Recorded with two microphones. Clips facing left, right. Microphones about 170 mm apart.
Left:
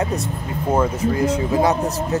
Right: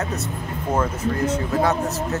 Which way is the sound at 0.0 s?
15° left (ahead or behind).